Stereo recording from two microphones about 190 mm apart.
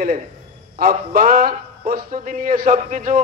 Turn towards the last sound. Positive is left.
turn(degrees=-45)  # may be behind; listen again after turning